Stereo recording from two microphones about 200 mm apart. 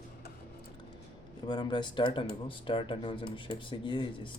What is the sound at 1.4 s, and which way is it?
Speech, 20° left (ahead or behind).